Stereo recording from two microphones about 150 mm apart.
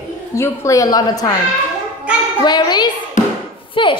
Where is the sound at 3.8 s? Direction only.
35° left (ahead or behind).